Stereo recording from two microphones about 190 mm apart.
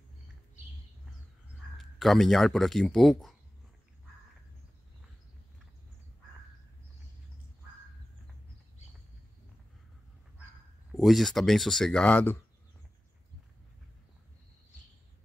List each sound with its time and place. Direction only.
1.8 s speech: centre (ahead or behind)
10.9 s speech: centre (ahead or behind)